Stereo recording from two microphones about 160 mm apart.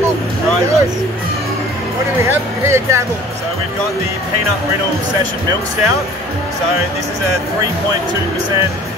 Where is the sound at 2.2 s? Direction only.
15° right (ahead or behind).